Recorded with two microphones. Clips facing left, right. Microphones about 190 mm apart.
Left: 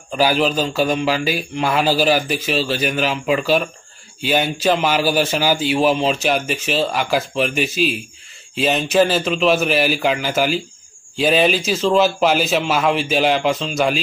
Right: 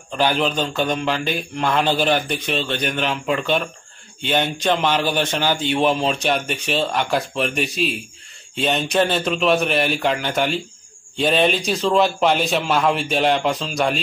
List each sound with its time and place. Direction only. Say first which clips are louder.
0.1 s a man's voice: left 3 dB; 5° left (ahead or behind)